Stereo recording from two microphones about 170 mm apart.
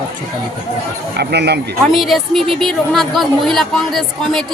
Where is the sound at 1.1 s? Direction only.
75° right (ahead or behind).